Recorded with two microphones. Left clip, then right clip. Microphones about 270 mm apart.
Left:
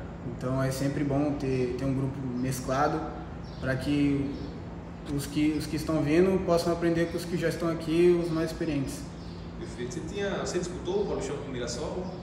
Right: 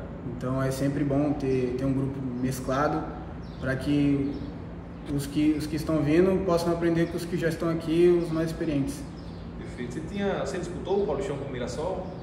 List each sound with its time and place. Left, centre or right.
0.4 s a man's voice: centre
5.1 s a man's voice: centre
10.1 s a man's voice: right